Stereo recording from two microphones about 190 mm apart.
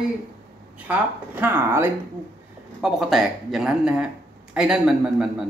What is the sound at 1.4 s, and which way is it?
Speech, 10° right (ahead or behind).